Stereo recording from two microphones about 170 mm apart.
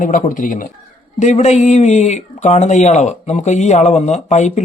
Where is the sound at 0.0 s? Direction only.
50° left (ahead or behind).